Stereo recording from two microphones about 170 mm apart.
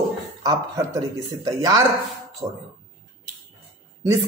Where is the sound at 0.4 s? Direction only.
20° right (ahead or behind).